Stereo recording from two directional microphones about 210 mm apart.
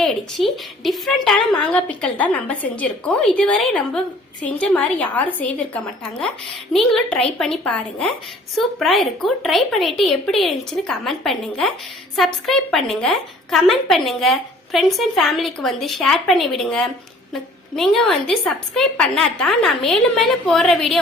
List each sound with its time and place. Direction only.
0.0 s a woman's voice: centre (ahead or behind)